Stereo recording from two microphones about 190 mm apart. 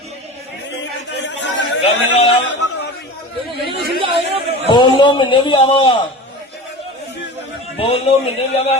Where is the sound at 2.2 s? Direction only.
30° left (ahead or behind).